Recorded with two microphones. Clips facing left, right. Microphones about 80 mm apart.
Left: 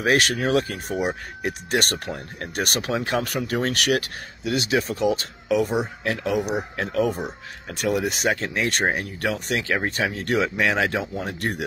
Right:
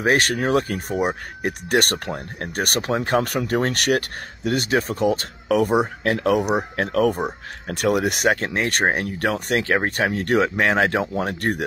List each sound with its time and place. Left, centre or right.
0.0 s speech: right